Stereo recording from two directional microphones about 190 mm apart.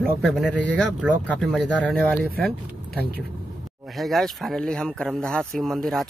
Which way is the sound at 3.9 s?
Centre (ahead or behind).